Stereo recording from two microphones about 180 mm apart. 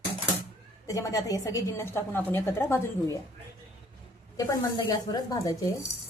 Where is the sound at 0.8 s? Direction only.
20° left (ahead or behind).